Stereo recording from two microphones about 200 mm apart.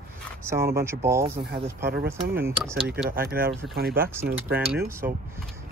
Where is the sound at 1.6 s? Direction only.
30° right (ahead or behind).